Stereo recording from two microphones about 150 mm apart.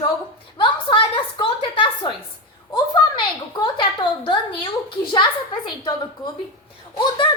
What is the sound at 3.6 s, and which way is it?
A woman's voice, 35° left (ahead or behind).